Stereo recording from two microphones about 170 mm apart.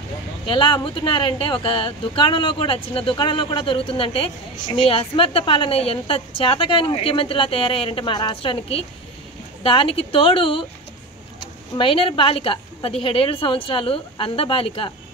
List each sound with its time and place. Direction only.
0.5 s a woman's voice: 30° left (ahead or behind)